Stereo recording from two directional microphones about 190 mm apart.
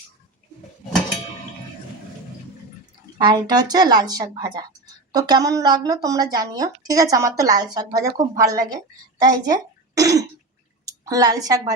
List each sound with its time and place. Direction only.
3.2 s a woman's voice: 20° right (ahead or behind)